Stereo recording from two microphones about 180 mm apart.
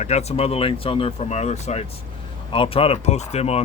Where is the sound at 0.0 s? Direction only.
35° left (ahead or behind).